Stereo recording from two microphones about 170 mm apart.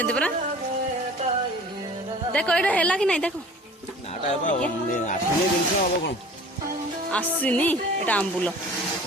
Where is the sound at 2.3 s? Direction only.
5° left (ahead or behind).